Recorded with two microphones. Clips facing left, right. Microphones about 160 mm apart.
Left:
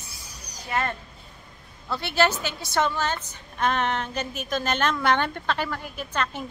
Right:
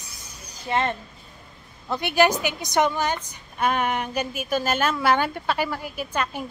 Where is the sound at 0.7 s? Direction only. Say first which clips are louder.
Right 3 dB; 25° right (ahead or behind).